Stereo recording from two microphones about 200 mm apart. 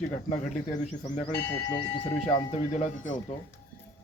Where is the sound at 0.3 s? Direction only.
40° left (ahead or behind).